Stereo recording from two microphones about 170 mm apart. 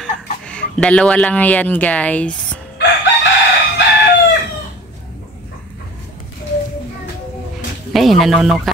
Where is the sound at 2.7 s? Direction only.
90° left.